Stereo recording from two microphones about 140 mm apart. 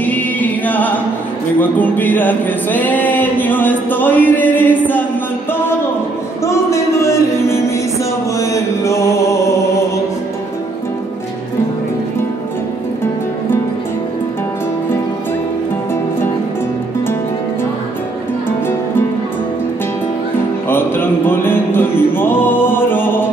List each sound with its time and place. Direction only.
0.0 s music: 10° left (ahead or behind)
1.6 s a sound: 10° left (ahead or behind)
6.4 s music: 20° left (ahead or behind)
8.4 s mantra: 20° left (ahead or behind)
20.6 s music: 15° left (ahead or behind)